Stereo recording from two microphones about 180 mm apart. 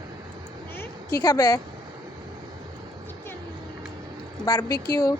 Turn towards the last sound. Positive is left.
turn(degrees=15)  # may be behind; listen again after turning